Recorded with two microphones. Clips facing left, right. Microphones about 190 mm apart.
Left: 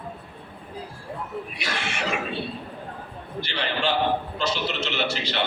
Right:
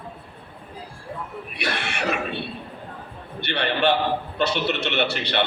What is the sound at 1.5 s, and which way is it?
Speech, 60° right (ahead or behind).